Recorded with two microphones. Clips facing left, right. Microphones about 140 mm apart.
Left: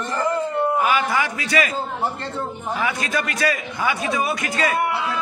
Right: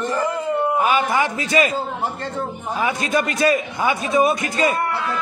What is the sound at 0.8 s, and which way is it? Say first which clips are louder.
Speech: right 2 dB; 20° right (ahead or behind).